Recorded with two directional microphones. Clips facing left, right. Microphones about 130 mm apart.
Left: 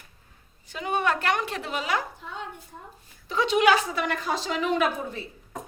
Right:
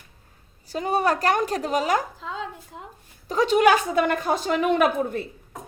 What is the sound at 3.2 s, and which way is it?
A woman's voice, 45° right (ahead or behind).